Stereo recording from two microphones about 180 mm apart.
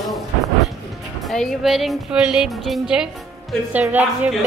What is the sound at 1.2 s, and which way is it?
A woman's voice, centre (ahead or behind).